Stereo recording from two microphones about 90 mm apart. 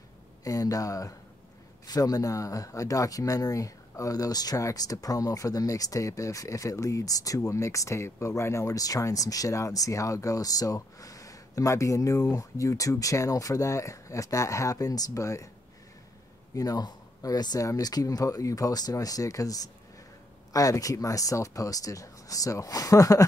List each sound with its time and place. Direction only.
0.4 s speech: 40° left (ahead or behind)
16.5 s speech: 45° left (ahead or behind)